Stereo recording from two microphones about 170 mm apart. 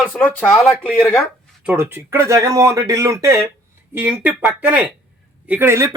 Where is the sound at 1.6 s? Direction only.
10° right (ahead or behind).